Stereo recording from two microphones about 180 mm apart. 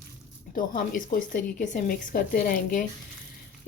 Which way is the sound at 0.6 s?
50° left (ahead or behind).